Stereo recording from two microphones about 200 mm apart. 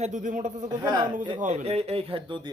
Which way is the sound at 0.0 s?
40° right (ahead or behind).